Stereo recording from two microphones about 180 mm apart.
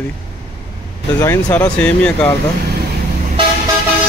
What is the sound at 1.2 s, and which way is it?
Speech, 15° left (ahead or behind).